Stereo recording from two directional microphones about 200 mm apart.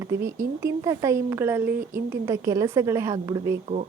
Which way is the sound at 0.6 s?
15° right (ahead or behind).